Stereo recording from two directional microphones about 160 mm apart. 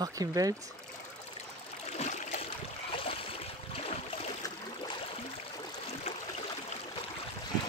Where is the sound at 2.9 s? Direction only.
35° left (ahead or behind).